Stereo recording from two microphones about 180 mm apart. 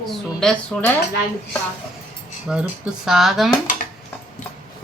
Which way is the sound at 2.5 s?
5° right (ahead or behind).